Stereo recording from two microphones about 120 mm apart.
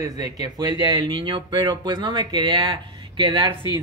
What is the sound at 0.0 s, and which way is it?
Speech, 35° right (ahead or behind).